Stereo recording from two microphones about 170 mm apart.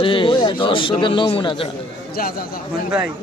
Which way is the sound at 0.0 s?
30° left (ahead or behind).